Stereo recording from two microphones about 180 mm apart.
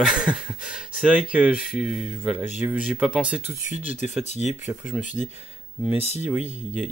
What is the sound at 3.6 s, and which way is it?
Speech, 45° left (ahead or behind).